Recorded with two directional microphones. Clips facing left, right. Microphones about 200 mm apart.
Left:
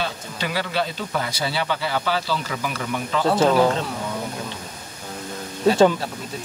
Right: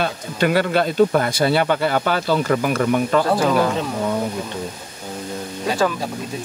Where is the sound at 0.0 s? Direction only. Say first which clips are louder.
Right 8 dB; 55° right (ahead or behind).